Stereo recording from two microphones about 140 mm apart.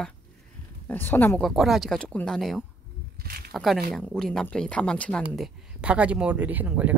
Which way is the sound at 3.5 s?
Centre (ahead or behind).